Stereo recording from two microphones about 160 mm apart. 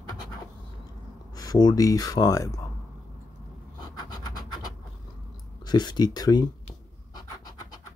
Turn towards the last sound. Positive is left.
turn(degrees=25)  # may be behind; listen again after turning